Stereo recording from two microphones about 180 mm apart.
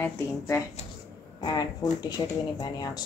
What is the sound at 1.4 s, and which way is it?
Speech, 20° left (ahead or behind).